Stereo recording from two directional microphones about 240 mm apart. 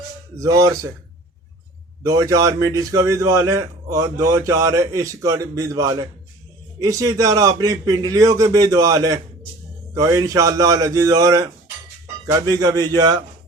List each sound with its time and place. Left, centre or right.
0.3 s a man's voice: centre
2.0 s a man's voice: centre